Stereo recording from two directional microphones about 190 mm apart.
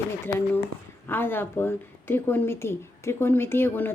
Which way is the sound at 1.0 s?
10° left (ahead or behind).